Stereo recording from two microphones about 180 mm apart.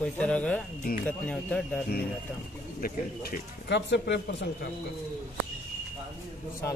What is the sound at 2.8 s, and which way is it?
Speech, 50° left (ahead or behind).